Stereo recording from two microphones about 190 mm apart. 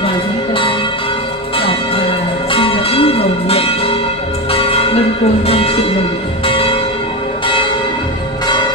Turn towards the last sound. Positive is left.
turn(degrees=30)  # may be behind; listen again after turning